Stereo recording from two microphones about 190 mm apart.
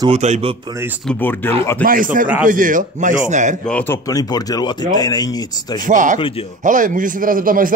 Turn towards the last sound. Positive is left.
turn(degrees=-45)  # may be behind; listen again after turning